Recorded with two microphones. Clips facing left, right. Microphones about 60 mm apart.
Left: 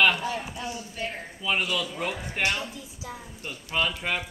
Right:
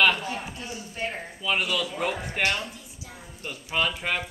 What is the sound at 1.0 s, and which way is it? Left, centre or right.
Speech, right.